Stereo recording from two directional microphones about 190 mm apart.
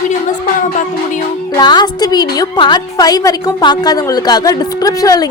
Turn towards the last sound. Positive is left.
turn(degrees=20)  # may be behind; listen again after turning